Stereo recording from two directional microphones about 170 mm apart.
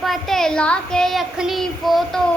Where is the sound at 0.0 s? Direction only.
Centre (ahead or behind).